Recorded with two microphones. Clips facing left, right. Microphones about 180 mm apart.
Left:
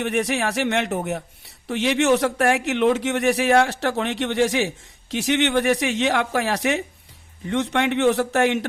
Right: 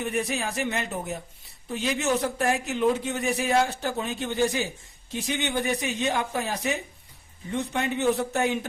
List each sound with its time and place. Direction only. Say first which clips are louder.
0.0 s speech: left 6 dB; 75° left (ahead or behind)